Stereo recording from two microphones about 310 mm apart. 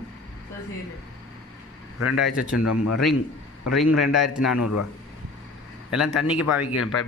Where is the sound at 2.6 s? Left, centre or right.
Left.